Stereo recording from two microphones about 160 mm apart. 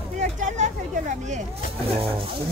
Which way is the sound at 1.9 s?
35° right (ahead or behind).